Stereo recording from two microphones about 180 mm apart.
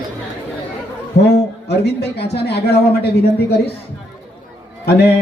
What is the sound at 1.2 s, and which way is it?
Speech, 65° left (ahead or behind).